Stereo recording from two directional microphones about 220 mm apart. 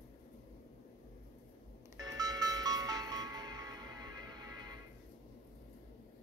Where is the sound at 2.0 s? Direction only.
15° right (ahead or behind).